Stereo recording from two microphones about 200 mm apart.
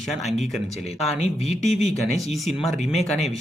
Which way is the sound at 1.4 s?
35° left (ahead or behind).